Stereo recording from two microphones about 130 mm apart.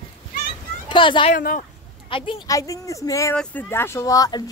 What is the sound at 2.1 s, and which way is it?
Speech, 45° left (ahead or behind).